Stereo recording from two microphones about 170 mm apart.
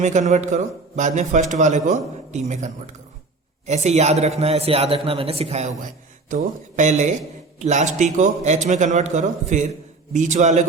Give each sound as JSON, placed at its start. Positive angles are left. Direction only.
{"t": 0.0, "sound": "a man's voice", "side_deg": -45}